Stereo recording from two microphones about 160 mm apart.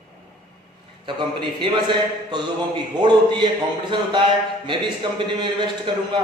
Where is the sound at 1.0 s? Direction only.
30° right (ahead or behind).